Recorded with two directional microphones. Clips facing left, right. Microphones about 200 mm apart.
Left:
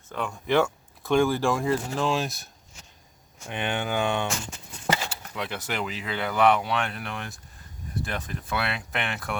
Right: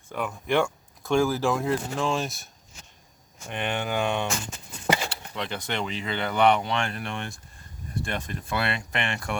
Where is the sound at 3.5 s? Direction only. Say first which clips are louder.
Even; centre (ahead or behind).